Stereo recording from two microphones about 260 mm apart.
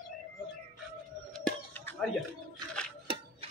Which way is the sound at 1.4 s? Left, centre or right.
Centre.